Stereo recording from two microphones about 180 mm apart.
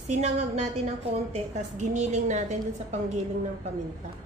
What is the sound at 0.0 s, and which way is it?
Speech, 40° right (ahead or behind).